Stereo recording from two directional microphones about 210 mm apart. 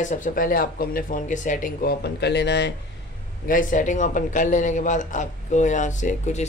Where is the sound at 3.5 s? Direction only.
40° left (ahead or behind).